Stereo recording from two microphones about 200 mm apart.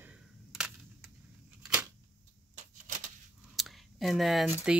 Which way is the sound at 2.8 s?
40° right (ahead or behind).